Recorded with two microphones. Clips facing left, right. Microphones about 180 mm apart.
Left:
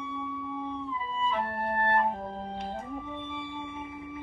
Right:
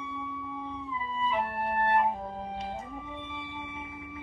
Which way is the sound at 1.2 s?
15° right (ahead or behind).